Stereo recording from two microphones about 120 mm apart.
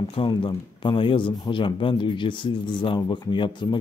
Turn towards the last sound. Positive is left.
turn(degrees=40)  # may be behind; listen again after turning